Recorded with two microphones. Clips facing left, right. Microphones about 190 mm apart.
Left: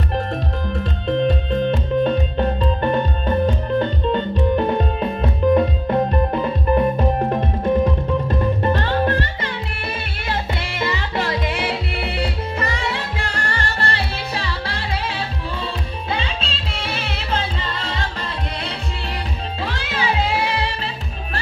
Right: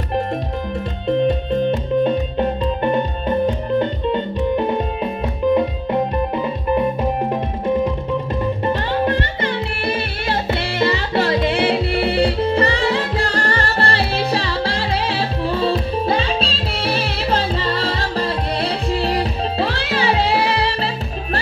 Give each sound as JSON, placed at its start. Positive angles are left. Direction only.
{"t": 1.0, "sound": "music", "side_deg": -15}
{"t": 10.8, "sound": "music", "side_deg": -35}